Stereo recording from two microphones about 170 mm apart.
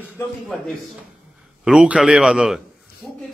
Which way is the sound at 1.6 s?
5° right (ahead or behind).